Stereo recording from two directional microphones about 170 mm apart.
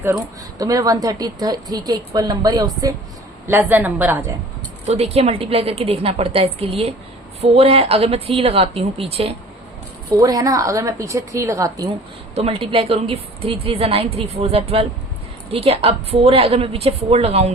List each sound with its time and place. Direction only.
0.6 s a woman's voice: 20° right (ahead or behind)
3.4 s a woman's voice: 10° right (ahead or behind)
4.9 s a woman's voice: 40° right (ahead or behind)
10.2 s a woman's voice: 20° right (ahead or behind)
12.3 s a woman's voice: 35° right (ahead or behind)